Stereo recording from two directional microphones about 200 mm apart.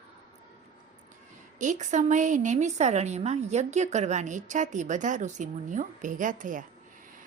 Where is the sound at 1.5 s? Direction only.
40° right (ahead or behind).